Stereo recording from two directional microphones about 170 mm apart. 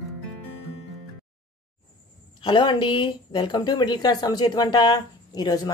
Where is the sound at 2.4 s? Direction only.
30° left (ahead or behind).